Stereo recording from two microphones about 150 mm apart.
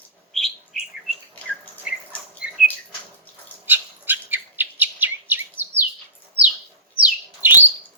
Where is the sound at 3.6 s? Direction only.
15° right (ahead or behind).